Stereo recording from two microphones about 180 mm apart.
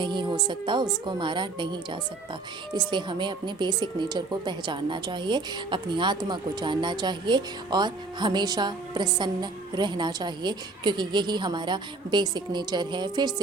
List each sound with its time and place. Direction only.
0.0 s speech: 25° right (ahead or behind)